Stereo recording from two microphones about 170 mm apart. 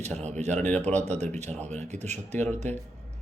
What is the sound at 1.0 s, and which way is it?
Speech, 40° right (ahead or behind).